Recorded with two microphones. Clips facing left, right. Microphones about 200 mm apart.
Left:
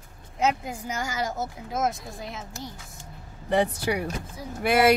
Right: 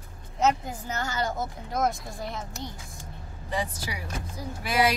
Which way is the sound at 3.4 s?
60° left (ahead or behind).